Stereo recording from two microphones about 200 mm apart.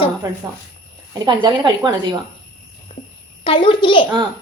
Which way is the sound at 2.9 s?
30° left (ahead or behind).